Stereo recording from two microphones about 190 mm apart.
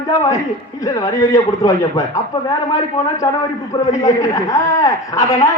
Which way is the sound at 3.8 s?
15° left (ahead or behind).